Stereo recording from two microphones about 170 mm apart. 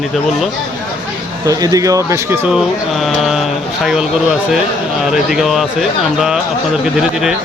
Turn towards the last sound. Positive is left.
turn(degrees=0)  # may be behind; listen again after turning